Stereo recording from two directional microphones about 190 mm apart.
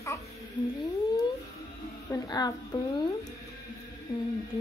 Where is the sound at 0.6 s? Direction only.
25° left (ahead or behind).